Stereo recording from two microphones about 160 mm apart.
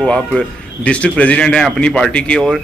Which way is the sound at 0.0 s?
5° left (ahead or behind).